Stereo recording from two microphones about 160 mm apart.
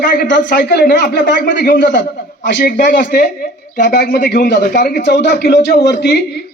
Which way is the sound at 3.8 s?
90° left.